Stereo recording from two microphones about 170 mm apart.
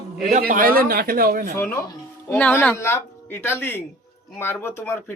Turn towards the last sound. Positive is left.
turn(degrees=10)  # may be behind; listen again after turning